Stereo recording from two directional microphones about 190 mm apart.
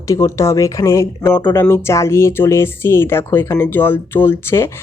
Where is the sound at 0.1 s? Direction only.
15° left (ahead or behind).